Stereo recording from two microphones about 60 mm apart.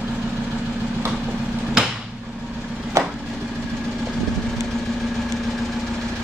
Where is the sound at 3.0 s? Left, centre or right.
Right.